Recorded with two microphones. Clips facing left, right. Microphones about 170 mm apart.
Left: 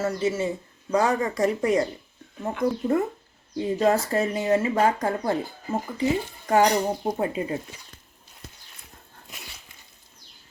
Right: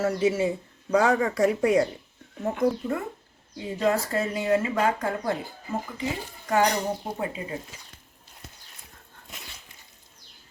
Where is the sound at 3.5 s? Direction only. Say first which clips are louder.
Left 3 dB; 30° left (ahead or behind).